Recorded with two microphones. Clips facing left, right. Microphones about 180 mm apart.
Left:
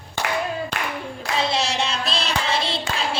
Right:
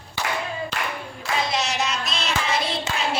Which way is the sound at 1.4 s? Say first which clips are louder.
Left 2 dB; 30° left (ahead or behind).